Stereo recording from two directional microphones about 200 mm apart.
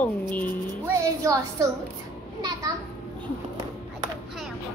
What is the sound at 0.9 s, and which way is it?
Speech, 15° right (ahead or behind).